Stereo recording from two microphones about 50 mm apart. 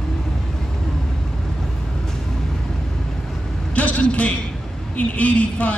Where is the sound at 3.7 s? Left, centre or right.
Left.